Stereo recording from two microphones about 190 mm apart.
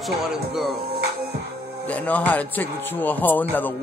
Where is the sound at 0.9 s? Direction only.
55° right (ahead or behind).